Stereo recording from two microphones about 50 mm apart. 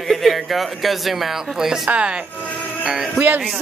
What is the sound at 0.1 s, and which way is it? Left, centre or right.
Speech, centre.